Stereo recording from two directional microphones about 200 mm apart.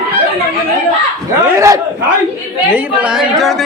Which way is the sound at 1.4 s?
15° right (ahead or behind).